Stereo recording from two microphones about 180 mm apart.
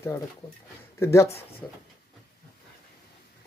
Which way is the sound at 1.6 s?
5° left (ahead or behind).